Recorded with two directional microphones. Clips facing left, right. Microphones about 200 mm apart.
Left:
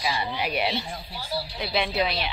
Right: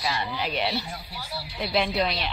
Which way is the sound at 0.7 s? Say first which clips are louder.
Even; 30° left (ahead or behind).